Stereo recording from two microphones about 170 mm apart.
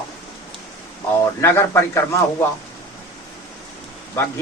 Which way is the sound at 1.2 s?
15° left (ahead or behind).